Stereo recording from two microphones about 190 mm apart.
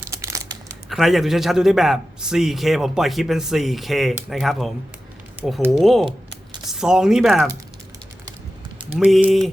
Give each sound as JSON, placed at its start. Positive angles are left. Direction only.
{"t": 0.1, "sound": "crumpling", "side_deg": -15}
{"t": 0.9, "sound": "a man's voice", "side_deg": 0}
{"t": 5.8, "sound": "a man's voice", "side_deg": 0}
{"t": 8.9, "sound": "a man's voice", "side_deg": -5}